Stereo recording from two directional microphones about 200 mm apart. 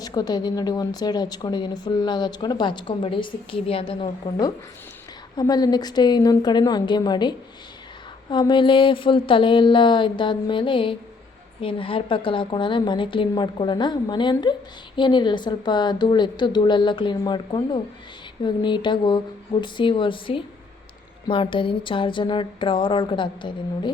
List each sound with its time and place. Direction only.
0.0 s speech: 20° left (ahead or behind)